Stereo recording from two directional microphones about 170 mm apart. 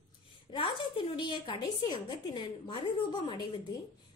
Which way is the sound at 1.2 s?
25° left (ahead or behind).